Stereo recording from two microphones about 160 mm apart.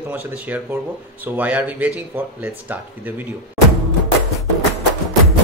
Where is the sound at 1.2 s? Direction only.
10° right (ahead or behind).